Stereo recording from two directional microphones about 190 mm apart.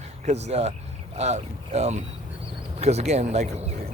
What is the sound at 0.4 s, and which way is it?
Speech, 35° right (ahead or behind).